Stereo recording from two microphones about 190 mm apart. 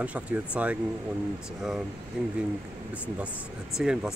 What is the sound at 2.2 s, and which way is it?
Speech, 5° right (ahead or behind).